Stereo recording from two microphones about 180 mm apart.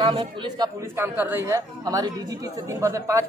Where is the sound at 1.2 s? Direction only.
10° right (ahead or behind).